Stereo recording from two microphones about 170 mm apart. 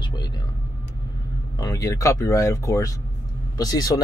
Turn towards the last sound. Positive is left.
turn(degrees=20)  # may be behind; listen again after turning